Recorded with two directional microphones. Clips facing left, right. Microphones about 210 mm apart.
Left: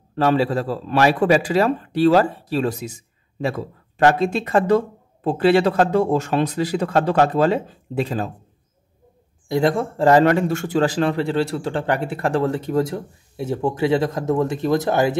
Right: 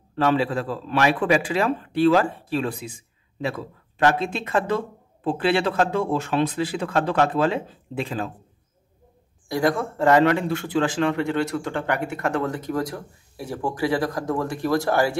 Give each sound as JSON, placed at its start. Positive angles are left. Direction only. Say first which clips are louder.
{"t": 0.1, "sound": "speech", "louder": "left 3 dB", "side_deg": 40}
{"t": 9.5, "sound": "a man's voice", "louder": "left 3 dB", "side_deg": 25}